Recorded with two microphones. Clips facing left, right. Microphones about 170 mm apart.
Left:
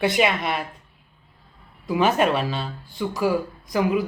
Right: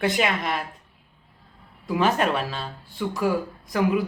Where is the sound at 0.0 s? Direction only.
5° left (ahead or behind).